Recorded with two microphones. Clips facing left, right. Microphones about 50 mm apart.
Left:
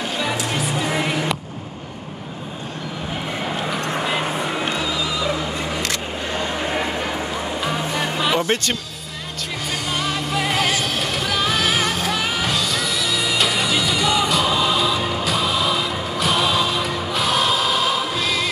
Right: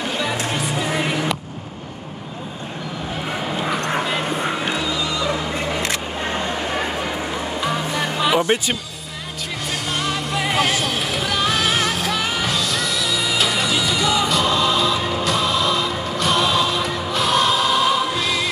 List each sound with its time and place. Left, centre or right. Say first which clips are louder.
0.5 s music: even; centre
4.0 s music: even; centre
5.6 s single-lens reflex camera: right 2 dB; centre
6.6 s music: even; centre
9.9 s music: even; centre